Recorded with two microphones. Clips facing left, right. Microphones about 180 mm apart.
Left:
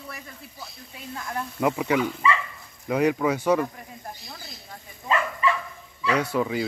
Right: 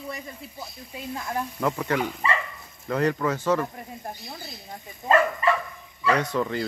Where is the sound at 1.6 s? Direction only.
10° left (ahead or behind).